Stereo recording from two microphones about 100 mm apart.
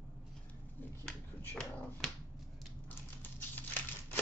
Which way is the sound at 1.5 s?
15° left (ahead or behind).